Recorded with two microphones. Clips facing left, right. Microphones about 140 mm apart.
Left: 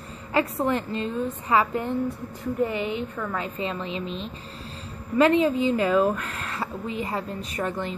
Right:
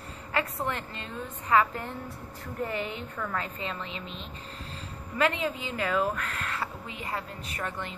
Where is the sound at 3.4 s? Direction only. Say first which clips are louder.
Left 6 dB; 20° left (ahead or behind).